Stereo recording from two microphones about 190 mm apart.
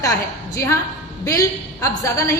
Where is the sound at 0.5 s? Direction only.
15° left (ahead or behind).